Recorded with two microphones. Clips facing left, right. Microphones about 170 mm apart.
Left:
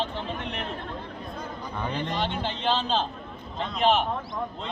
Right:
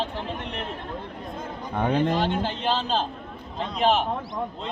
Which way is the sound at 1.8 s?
55° right (ahead or behind).